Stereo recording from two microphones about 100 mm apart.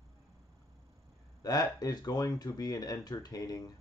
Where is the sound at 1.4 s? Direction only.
40° left (ahead or behind).